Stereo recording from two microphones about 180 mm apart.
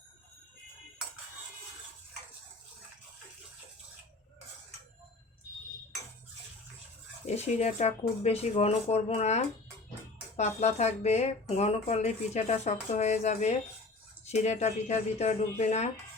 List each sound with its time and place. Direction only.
7.3 s speech: 40° left (ahead or behind)